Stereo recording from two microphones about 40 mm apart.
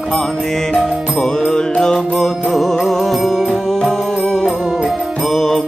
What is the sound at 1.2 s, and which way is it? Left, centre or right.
Music, centre.